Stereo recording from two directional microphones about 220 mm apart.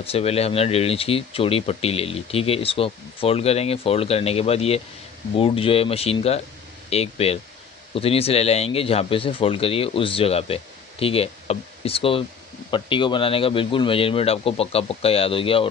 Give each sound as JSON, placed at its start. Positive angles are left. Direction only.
{"t": 0.0, "sound": "speech", "side_deg": 25}